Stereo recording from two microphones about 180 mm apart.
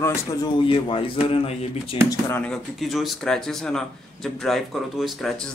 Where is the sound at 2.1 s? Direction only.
15° left (ahead or behind).